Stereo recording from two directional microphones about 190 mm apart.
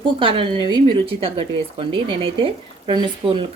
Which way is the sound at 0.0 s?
25° right (ahead or behind).